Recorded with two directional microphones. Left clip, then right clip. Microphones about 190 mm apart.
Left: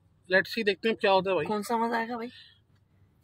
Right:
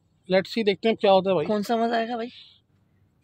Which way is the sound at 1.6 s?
45° right (ahead or behind).